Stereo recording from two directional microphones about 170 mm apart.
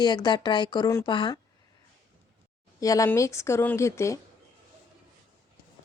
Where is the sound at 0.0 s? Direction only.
25° left (ahead or behind).